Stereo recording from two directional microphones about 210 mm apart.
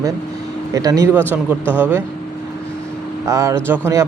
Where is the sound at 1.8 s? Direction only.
10° right (ahead or behind).